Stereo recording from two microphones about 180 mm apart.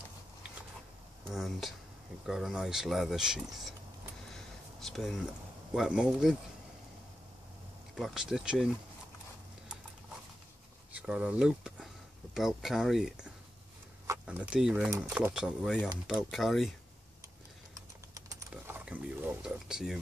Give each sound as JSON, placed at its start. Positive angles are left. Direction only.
{"t": 1.3, "sound": "speech", "side_deg": 0}
{"t": 4.3, "sound": "a sound", "side_deg": 0}
{"t": 5.7, "sound": "speech", "side_deg": -5}
{"t": 7.9, "sound": "speech", "side_deg": 0}
{"t": 10.9, "sound": "a sound", "side_deg": -5}
{"t": 12.4, "sound": "speech", "side_deg": 0}
{"t": 18.1, "sound": "typing", "side_deg": -15}
{"t": 18.5, "sound": "mechanisms", "side_deg": -10}